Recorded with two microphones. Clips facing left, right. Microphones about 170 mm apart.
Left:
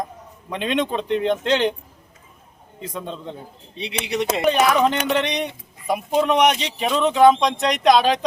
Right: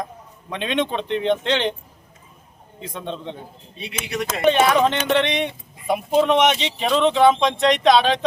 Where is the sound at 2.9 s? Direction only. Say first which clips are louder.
Right 1 dB; 5° left (ahead or behind).